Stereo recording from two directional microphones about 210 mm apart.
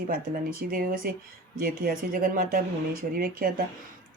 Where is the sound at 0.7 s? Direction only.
40° right (ahead or behind).